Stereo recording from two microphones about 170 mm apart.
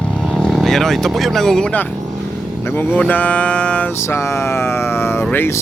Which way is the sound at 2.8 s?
10° left (ahead or behind).